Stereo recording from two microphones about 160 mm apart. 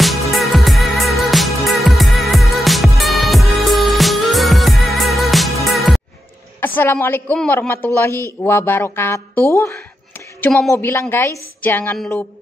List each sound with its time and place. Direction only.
0.0 s music: centre (ahead or behind)
6.6 s speech: 10° left (ahead or behind)
10.4 s speech: centre (ahead or behind)
10.7 s speech: 15° left (ahead or behind)